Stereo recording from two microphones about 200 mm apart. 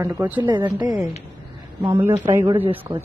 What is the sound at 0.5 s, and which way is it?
Speech, 20° right (ahead or behind).